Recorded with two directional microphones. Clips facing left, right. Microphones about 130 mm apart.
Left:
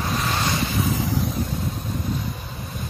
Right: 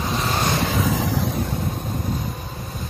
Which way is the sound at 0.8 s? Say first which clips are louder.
Right 2 dB; 90° right.